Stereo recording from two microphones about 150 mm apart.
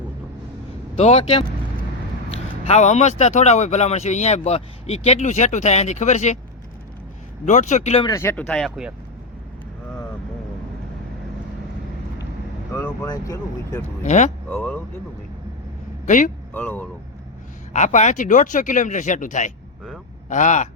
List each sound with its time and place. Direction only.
0.9 s speech: 45° left (ahead or behind)
7.4 s speech: 55° left (ahead or behind)
8.0 s speech: 20° left (ahead or behind); by 8.9 s centre (ahead or behind)
12.7 s vehicle: 15° left (ahead or behind)
13.1 s speech: 20° left (ahead or behind)
14.0 s speech: 50° left (ahead or behind)
14.4 s speech: 10° left (ahead or behind)
16.0 s speech: 60° left (ahead or behind)
16.6 s speech: 10° left (ahead or behind)
17.7 s speech: 55° left (ahead or behind)